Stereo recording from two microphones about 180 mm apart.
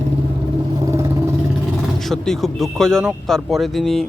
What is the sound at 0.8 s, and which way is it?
Vehicle, 15° right (ahead or behind).